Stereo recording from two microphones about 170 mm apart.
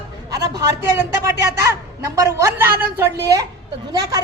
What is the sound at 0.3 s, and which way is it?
A woman's voice, 20° right (ahead or behind).